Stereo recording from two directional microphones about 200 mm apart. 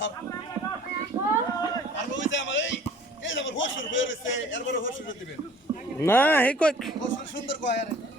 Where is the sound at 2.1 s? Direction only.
65° left (ahead or behind).